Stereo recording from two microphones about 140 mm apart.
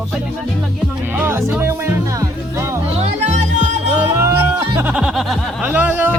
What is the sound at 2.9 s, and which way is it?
Music, 55° right (ahead or behind).